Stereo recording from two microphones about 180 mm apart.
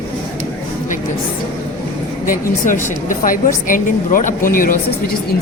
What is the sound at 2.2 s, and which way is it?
A woman's voice, 50° left (ahead or behind).